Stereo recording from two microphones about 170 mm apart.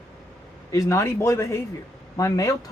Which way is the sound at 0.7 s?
20° left (ahead or behind).